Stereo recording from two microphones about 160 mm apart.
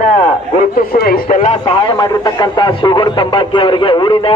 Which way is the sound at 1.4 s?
35° left (ahead or behind).